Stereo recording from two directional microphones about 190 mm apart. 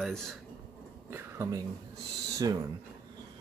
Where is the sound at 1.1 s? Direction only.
15° right (ahead or behind).